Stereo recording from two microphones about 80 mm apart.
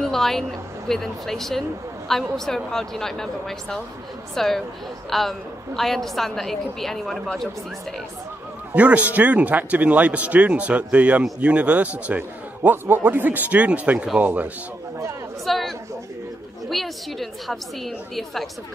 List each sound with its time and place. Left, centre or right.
0.0 s a woman's voice: centre
8.7 s a man's voice: centre
15.4 s chatter: centre
16.6 s a woman's voice: centre